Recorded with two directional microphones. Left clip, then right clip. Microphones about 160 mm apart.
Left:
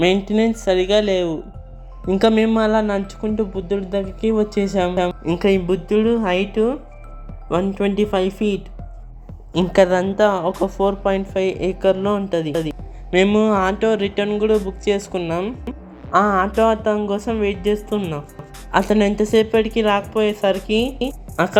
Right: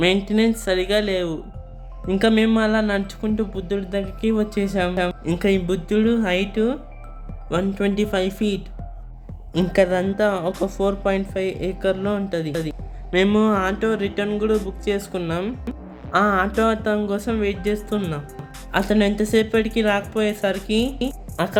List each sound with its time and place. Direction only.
0.0 s speech: 20° left (ahead or behind)
9.7 s speech: 10° left (ahead or behind)
11.3 s speech: 15° left (ahead or behind)
12.6 s music: 15° left (ahead or behind)
13.2 s speech: 10° left (ahead or behind)
15.3 s speech: 5° left (ahead or behind)
17.8 s speech: centre (ahead or behind)
18.7 s speech: 15° left (ahead or behind)
20.7 s speech: 15° left (ahead or behind)